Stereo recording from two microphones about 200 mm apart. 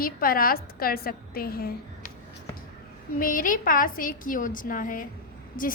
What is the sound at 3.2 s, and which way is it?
A woman's voice, 45° left (ahead or behind).